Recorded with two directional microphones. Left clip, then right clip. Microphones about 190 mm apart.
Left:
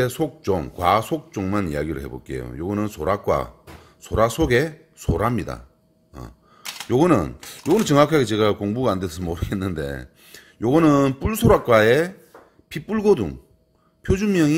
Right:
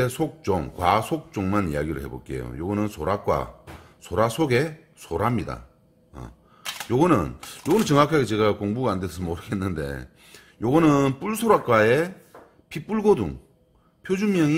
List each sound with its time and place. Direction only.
0.0 s speech: 15° left (ahead or behind)